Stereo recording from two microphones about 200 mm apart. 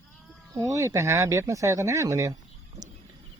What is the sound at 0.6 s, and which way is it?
Speech, 15° right (ahead or behind).